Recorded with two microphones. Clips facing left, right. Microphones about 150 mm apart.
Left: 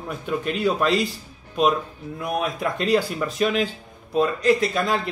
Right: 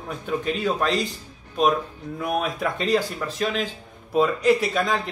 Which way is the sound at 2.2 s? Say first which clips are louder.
Even; centre (ahead or behind).